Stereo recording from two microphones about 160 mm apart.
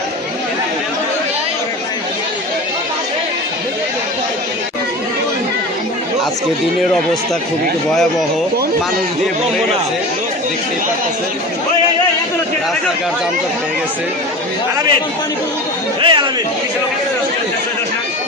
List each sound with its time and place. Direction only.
16.0 s speech: 30° right (ahead or behind)